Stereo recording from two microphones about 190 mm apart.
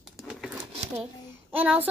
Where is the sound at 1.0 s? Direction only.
10° right (ahead or behind).